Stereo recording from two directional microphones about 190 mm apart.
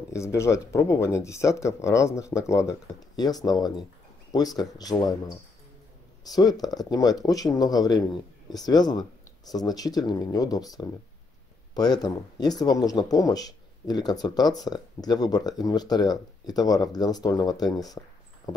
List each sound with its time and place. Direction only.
0.1 s speech: 15° left (ahead or behind)
11.7 s speech: 20° left (ahead or behind)